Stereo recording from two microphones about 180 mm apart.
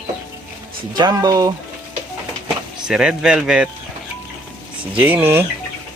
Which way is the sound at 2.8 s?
5° right (ahead or behind).